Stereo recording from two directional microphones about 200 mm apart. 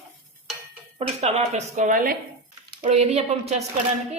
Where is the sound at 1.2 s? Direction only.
30° right (ahead or behind).